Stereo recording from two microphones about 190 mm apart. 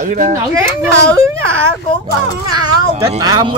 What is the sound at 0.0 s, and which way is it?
Speech, 40° right (ahead or behind).